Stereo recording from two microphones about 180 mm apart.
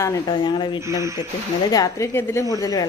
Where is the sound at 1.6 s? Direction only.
20° left (ahead or behind).